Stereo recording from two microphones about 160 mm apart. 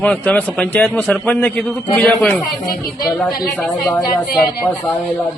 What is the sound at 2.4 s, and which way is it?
Speech, 25° left (ahead or behind).